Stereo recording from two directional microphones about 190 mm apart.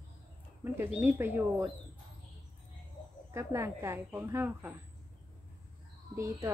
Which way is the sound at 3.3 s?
15° right (ahead or behind).